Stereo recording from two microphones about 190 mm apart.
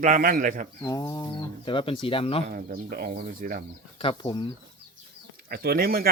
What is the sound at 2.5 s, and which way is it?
Speech, 50° right (ahead or behind).